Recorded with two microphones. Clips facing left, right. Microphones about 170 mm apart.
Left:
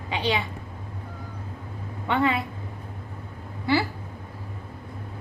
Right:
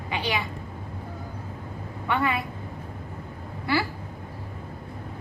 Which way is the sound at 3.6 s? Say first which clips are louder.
Left 3 dB; 25° left (ahead or behind).